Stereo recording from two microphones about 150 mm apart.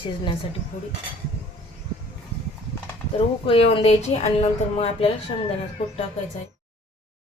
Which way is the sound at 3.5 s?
40° left (ahead or behind).